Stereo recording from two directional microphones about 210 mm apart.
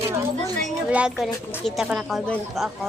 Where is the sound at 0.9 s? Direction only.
5° right (ahead or behind).